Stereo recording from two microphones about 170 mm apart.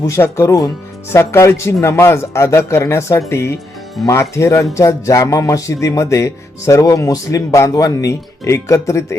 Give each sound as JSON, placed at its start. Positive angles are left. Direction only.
{"t": 0.0, "sound": "speech", "side_deg": 15}